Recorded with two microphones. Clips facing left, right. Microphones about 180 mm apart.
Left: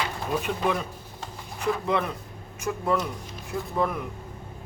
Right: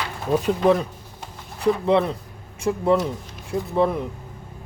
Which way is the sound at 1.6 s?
30° right (ahead or behind).